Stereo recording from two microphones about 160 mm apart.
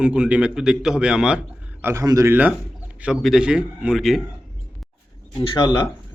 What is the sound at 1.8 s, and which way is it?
Speech, 20° right (ahead or behind).